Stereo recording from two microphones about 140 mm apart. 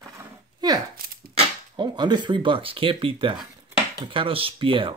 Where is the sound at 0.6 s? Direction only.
30° right (ahead or behind).